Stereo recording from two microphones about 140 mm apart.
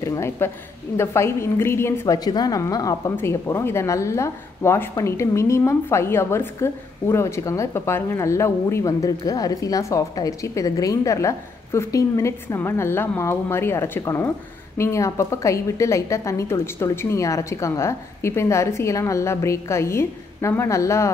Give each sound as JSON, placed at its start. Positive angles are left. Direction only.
{"t": 0.0, "sound": "a woman's voice", "side_deg": 20}